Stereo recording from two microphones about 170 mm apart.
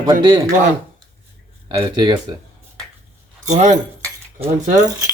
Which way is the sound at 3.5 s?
45° right (ahead or behind).